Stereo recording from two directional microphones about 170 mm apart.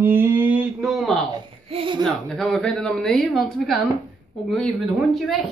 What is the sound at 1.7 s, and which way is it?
Speech, 30° right (ahead or behind).